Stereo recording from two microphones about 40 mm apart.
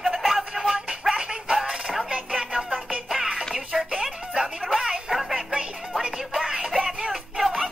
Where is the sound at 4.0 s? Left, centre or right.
Centre.